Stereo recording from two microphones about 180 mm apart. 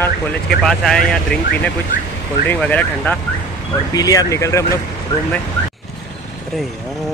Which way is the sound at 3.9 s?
20° left (ahead or behind).